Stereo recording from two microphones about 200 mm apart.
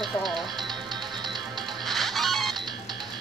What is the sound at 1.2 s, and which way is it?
Music, 20° right (ahead or behind).